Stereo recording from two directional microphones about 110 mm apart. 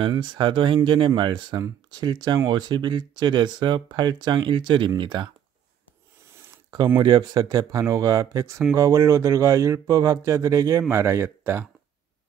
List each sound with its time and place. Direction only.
0.1 s speech: 45° right (ahead or behind)
7.0 s speech: 45° right (ahead or behind); by 11.6 s 20° right (ahead or behind)